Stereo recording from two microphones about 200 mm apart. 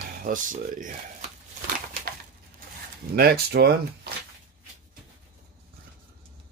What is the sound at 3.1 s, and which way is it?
Speech, 50° right (ahead or behind).